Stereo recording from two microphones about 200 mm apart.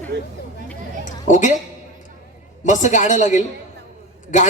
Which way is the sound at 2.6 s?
40° left (ahead or behind).